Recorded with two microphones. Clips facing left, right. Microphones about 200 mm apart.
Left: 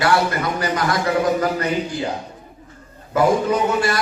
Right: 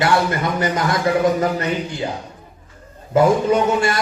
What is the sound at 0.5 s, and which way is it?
Speech, 25° right (ahead or behind).